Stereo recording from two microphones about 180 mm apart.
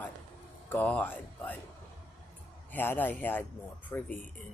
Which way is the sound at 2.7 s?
10° left (ahead or behind).